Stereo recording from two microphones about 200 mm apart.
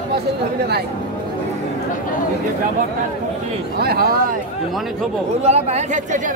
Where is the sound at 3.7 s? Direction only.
50° right (ahead or behind).